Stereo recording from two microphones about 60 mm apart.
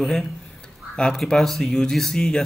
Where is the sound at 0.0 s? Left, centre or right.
Centre.